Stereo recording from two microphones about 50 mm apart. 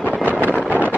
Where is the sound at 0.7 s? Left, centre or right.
Right.